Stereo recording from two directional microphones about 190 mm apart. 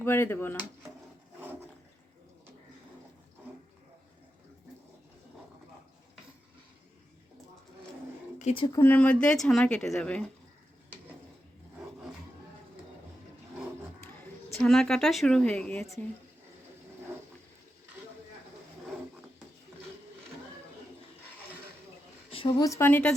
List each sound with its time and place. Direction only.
0.0 s speech: 10° left (ahead or behind)
1.4 s toilet flush: 10° right (ahead or behind)
8.4 s speech: 35° left (ahead or behind)
8.6 s speech: 15° left (ahead or behind)
14.6 s speech: centre (ahead or behind)
22.3 s speech: 30° left (ahead or behind); by 23.1 s 10° left (ahead or behind)